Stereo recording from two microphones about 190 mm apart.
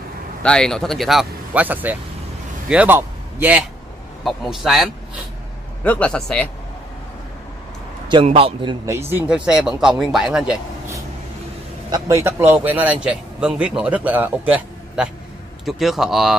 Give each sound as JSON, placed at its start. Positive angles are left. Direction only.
{"t": 0.4, "sound": "a man's voice", "side_deg": 5}
{"t": 8.1, "sound": "a man's voice", "side_deg": -25}
{"t": 9.1, "sound": "speech", "side_deg": -5}
{"t": 11.9, "sound": "a man's voice", "side_deg": -15}